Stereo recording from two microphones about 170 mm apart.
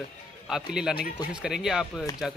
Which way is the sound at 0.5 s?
5° right (ahead or behind).